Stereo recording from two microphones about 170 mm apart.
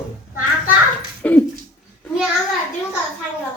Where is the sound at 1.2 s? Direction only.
10° left (ahead or behind).